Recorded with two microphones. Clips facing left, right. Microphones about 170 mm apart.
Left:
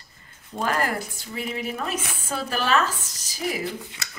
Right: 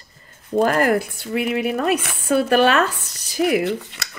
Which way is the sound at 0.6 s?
55° right (ahead or behind).